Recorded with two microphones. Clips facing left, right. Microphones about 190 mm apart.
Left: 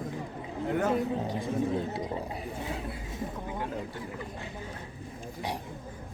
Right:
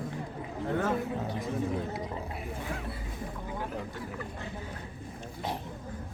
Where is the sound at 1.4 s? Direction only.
25° left (ahead or behind).